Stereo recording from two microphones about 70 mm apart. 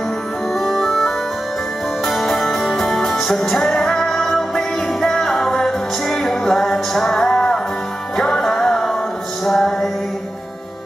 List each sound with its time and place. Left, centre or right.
0.6 s music: centre